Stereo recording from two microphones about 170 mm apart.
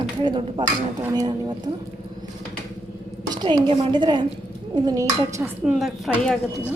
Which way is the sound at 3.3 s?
25° right (ahead or behind).